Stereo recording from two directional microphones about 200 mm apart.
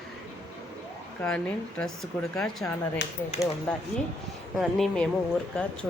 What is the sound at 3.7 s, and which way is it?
Speech, 5° left (ahead or behind).